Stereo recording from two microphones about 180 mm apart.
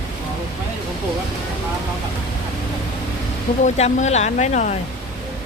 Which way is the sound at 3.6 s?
40° left (ahead or behind).